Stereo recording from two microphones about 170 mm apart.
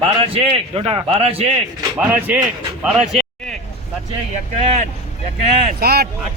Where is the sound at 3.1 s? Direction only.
Centre (ahead or behind).